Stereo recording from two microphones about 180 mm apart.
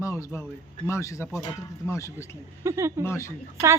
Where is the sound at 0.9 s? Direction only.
15° left (ahead or behind).